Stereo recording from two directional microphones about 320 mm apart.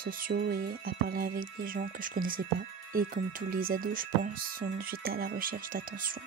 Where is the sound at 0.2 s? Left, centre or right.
Right.